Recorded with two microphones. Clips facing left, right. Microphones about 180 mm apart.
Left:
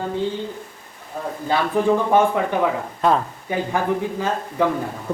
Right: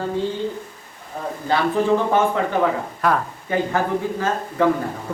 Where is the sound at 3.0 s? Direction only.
25° left (ahead or behind).